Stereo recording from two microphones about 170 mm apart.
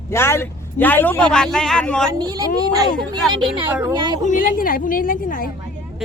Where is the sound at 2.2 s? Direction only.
20° right (ahead or behind).